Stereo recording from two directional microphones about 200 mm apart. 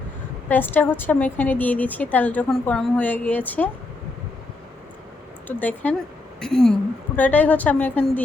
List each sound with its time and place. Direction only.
0.4 s a woman's voice: 10° left (ahead or behind)
5.5 s a woman's voice: 10° left (ahead or behind)